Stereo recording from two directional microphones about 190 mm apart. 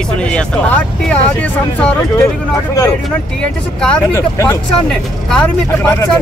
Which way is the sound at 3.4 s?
10° left (ahead or behind).